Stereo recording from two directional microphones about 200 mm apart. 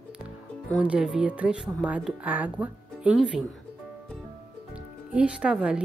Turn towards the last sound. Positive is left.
turn(degrees=-5)  # may be behind; listen again after turning